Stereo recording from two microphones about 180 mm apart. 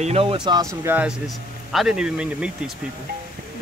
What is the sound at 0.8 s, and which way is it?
Speech, 5° right (ahead or behind).